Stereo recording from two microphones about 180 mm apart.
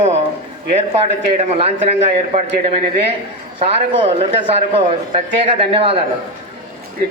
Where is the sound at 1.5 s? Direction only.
35° right (ahead or behind).